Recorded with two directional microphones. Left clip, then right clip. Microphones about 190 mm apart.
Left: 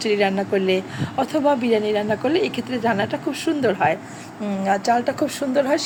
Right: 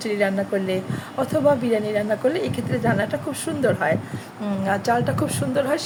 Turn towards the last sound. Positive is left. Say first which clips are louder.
# left 2 dB
turn(degrees=10)  # may be behind; listen again after turning